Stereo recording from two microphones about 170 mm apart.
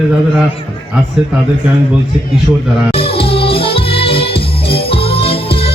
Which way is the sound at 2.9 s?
35° left (ahead or behind).